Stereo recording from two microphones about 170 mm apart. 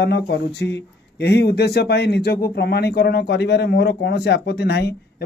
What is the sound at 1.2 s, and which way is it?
A man's voice, 80° left.